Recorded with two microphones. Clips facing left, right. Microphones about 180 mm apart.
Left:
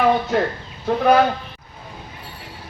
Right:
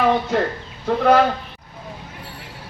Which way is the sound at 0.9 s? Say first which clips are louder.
Even; 10° left (ahead or behind).